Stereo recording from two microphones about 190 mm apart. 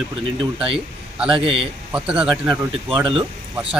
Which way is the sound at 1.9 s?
5° right (ahead or behind).